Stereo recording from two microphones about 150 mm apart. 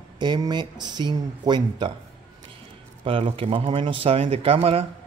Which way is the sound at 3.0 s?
35° right (ahead or behind).